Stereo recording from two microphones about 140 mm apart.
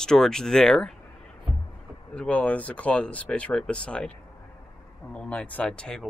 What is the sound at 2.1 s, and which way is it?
Speech, 10° left (ahead or behind).